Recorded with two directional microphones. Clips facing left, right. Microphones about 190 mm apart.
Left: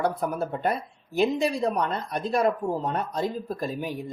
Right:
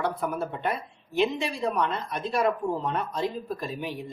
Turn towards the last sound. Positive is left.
turn(degrees=45)  # may be behind; listen again after turning